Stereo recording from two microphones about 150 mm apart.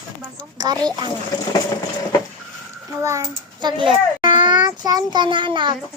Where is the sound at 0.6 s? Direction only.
25° right (ahead or behind).